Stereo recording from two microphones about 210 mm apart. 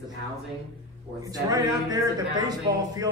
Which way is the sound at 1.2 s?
15° right (ahead or behind).